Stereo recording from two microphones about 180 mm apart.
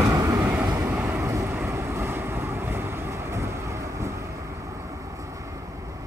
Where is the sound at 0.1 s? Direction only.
15° right (ahead or behind).